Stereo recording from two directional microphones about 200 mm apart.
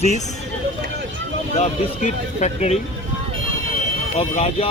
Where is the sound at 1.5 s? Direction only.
35° left (ahead or behind).